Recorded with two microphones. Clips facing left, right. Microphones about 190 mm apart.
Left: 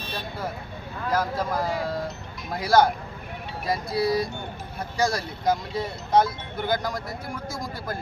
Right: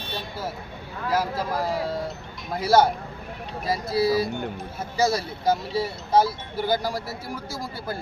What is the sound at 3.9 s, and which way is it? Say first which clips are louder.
Speech: right 3 dB; 30° right (ahead or behind).